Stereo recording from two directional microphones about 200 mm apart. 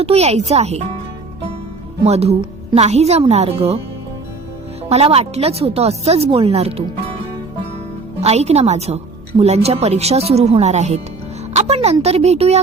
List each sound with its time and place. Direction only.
0.0 s speech: 30° right (ahead or behind)
2.0 s speech: 30° right (ahead or behind)
4.9 s speech: 30° right (ahead or behind)
8.2 s speech: 30° right (ahead or behind)